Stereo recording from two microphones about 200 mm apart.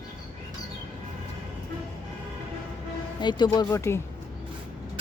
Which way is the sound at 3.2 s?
20° left (ahead or behind).